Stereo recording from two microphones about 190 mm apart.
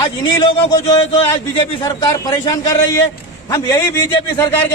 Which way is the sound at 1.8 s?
20° left (ahead or behind).